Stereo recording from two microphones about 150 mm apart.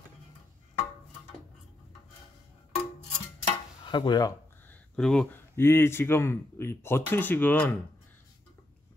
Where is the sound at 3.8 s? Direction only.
30° left (ahead or behind).